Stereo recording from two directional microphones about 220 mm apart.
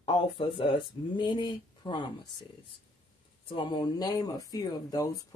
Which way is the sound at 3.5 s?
20° left (ahead or behind).